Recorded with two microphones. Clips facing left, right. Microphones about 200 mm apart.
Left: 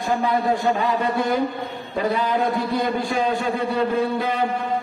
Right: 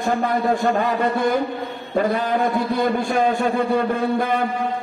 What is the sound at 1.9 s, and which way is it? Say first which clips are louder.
A man's voice: right 2 dB; 50° right (ahead or behind).